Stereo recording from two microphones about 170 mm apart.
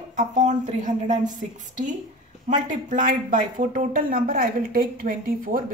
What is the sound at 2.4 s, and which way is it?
Speech, 50° right (ahead or behind).